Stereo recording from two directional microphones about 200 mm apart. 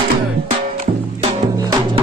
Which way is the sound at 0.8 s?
35° right (ahead or behind).